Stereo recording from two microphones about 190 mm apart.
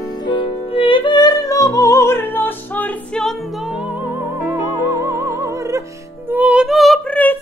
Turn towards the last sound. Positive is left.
turn(degrees=10)  # may be behind; listen again after turning